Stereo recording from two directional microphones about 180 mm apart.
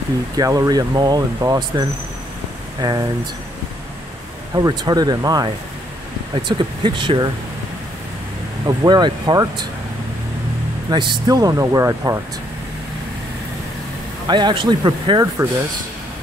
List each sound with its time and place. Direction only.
0.4 s speech: 20° right (ahead or behind)
4.6 s speech: 20° right (ahead or behind)
8.6 s speech: 25° right (ahead or behind)
10.9 s speech: 25° right (ahead or behind)
14.2 s speech: 25° right (ahead or behind)